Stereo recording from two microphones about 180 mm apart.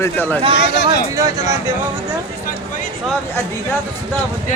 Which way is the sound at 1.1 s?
20° right (ahead or behind).